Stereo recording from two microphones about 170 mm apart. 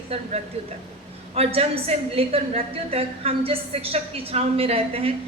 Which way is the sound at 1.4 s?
35° right (ahead or behind).